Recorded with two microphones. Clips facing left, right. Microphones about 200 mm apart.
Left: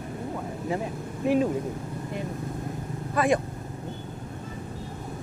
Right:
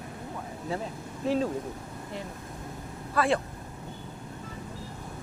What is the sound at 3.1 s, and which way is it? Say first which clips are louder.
Speech: left 3 dB; 15° left (ahead or behind).